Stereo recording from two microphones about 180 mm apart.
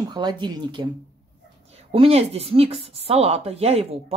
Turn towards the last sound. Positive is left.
turn(degrees=-35)  # may be behind; listen again after turning